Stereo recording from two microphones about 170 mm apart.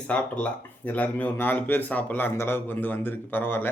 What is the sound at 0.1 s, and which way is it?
Speech, 10° left (ahead or behind).